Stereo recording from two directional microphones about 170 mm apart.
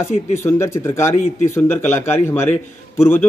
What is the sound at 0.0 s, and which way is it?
A man's voice, 15° left (ahead or behind).